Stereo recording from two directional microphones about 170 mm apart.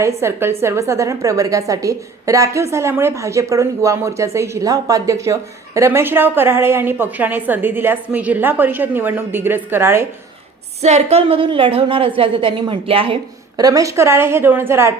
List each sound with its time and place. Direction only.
0.0 s speech: 15° right (ahead or behind)
10.8 s a woman's voice: 40° right (ahead or behind)
13.6 s speech: 20° right (ahead or behind)